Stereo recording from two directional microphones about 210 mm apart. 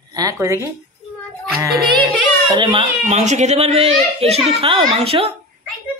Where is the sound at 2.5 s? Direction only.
25° right (ahead or behind).